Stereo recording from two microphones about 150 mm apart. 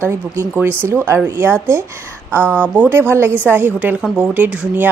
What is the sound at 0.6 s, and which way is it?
Speech, 15° right (ahead or behind).